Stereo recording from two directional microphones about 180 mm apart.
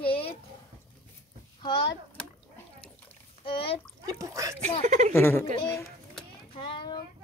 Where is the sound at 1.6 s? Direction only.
25° left (ahead or behind).